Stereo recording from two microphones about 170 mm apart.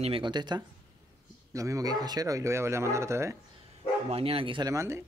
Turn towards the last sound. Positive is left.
turn(degrees=-15)  # may be behind; listen again after turning